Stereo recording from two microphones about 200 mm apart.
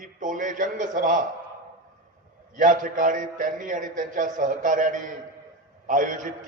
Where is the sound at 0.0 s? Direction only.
40° right (ahead or behind).